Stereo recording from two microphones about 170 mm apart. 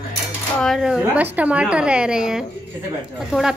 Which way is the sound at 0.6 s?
Centre (ahead or behind).